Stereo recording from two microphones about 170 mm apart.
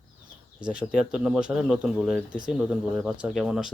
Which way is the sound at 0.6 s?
5° right (ahead or behind).